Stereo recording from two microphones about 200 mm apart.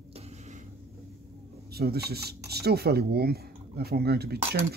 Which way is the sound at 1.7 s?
50° right (ahead or behind).